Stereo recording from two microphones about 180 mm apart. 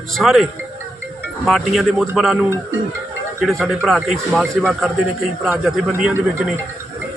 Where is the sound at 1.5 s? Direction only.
Centre (ahead or behind).